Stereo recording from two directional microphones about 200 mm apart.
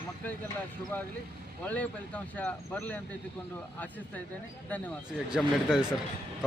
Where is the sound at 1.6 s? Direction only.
5° left (ahead or behind).